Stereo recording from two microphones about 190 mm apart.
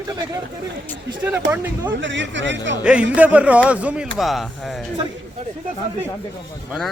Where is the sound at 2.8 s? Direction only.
5° right (ahead or behind).